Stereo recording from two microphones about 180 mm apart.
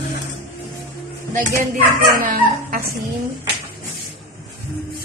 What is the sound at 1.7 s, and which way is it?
Speech, 50° right (ahead or behind).